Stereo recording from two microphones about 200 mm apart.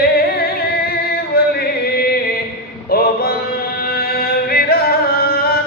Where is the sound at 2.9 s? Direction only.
50° left (ahead or behind).